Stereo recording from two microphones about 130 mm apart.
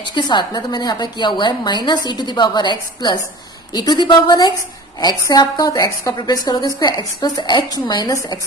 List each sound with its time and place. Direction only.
0.1 s a woman's voice: 35° left (ahead or behind)